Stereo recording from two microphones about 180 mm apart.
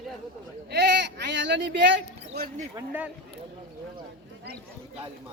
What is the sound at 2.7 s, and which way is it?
Speech, 10° right (ahead or behind).